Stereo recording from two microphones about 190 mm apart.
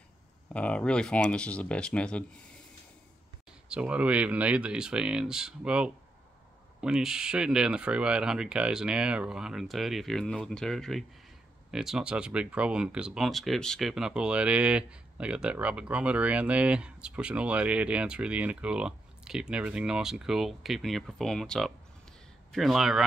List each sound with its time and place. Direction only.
0.5 s speech: 5° left (ahead or behind)
3.6 s speech: 5° right (ahead or behind)